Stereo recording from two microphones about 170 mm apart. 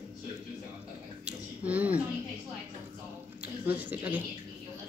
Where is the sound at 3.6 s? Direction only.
10° right (ahead or behind).